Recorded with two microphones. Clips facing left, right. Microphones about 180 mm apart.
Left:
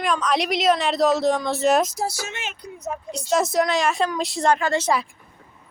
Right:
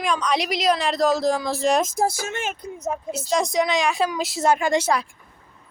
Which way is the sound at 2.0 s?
50° right (ahead or behind).